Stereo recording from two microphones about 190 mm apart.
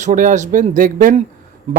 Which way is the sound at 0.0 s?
40° right (ahead or behind).